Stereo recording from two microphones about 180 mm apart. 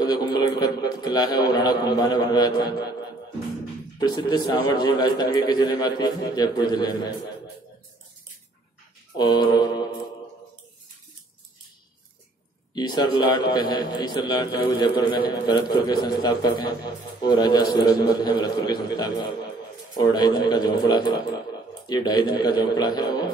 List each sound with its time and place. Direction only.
0.0 s a man's voice: 25° left (ahead or behind)
4.5 s a man's voice: 25° left (ahead or behind)
9.1 s a man's voice: 25° left (ahead or behind)
12.7 s a man's voice: 25° left (ahead or behind)